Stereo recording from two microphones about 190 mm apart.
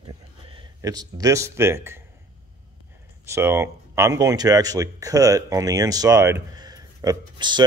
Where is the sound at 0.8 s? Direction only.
20° right (ahead or behind).